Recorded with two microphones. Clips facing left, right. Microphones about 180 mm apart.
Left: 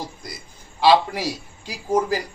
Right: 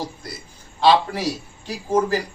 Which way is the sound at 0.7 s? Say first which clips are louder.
Even; 10° left (ahead or behind).